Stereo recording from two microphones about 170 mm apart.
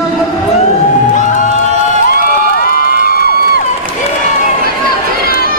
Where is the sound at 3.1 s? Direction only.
60° left (ahead or behind).